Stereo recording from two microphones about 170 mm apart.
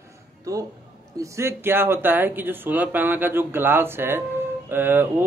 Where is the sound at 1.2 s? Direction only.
15° right (ahead or behind).